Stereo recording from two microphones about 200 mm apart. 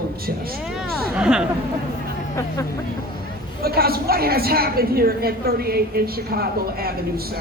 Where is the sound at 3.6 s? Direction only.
50° right (ahead or behind).